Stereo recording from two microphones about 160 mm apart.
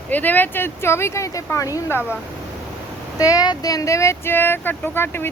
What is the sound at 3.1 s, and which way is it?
Speech, 20° left (ahead or behind).